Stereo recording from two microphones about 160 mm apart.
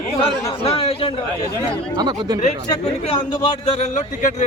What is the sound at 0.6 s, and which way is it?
Speech, 40° left (ahead or behind).